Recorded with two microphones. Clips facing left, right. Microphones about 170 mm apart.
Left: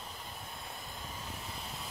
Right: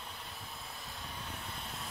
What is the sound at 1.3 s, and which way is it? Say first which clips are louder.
Vehicle: left 1 dB; centre (ahead or behind).